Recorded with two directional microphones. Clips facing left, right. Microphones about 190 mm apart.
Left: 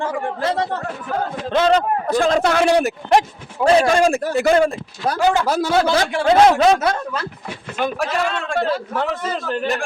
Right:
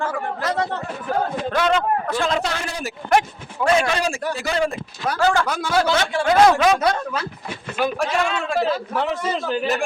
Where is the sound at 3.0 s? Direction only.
25° left (ahead or behind); by 4.6 s 55° left (ahead or behind).